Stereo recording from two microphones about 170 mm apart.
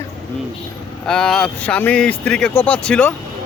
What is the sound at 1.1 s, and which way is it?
Speech, 5° left (ahead or behind).